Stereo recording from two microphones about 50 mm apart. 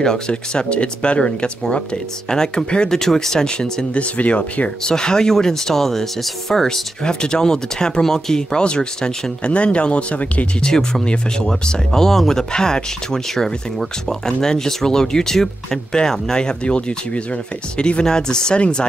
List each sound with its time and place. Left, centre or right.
0.0 s speech: centre
3.9 s speech: left
4.8 s speech: centre
10.7 s speech: centre